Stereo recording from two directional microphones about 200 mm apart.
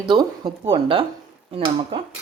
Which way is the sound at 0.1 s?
20° right (ahead or behind).